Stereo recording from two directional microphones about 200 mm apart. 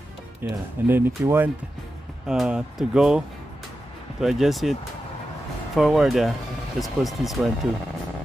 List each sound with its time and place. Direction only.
0.4 s speech: 10° right (ahead or behind)
5.8 s speech: centre (ahead or behind)